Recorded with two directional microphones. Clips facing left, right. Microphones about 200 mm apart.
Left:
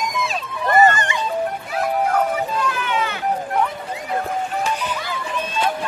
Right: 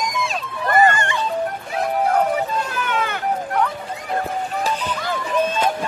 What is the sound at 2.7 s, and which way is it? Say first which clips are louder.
Run: even; 50° right (ahead or behind).